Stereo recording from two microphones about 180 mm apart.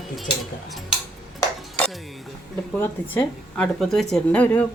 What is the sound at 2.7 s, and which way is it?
A woman's voice, 10° left (ahead or behind).